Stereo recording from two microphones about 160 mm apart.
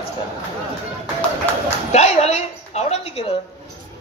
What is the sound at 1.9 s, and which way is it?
A woman's voice, 45° left (ahead or behind).